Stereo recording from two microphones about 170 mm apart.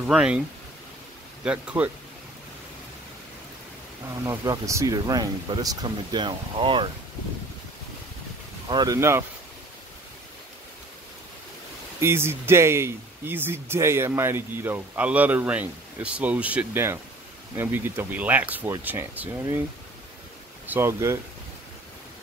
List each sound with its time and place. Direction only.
0.0 s speech: 5° right (ahead or behind)
1.4 s speech: 5° right (ahead or behind)
4.3 s speech: 20° right (ahead or behind)
8.6 s speech: 25° right (ahead or behind)
12.0 s speech: 15° right (ahead or behind)
20.6 s speech: 15° right (ahead or behind)